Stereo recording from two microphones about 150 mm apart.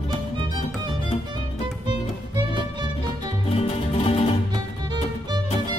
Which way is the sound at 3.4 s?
40° left (ahead or behind).